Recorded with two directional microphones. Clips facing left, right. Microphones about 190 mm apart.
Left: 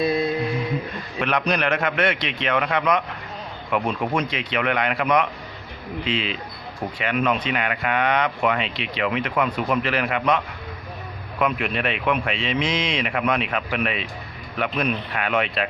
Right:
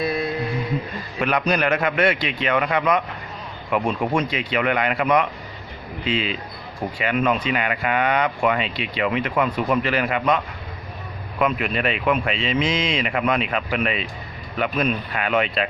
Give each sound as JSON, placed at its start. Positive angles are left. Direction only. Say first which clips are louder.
{"t": 0.0, "sound": "mantra", "louder": "left 2 dB", "side_deg": 20}
{"t": 1.2, "sound": "speech", "louder": "right 2 dB", "side_deg": -5}
{"t": 4.0, "sound": "speech", "louder": "right 2 dB", "side_deg": -10}